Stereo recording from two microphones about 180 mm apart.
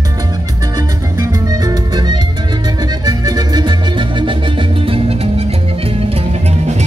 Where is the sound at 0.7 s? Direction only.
20° right (ahead or behind).